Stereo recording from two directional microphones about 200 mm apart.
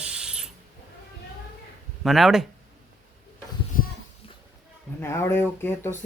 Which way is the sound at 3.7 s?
45° left (ahead or behind).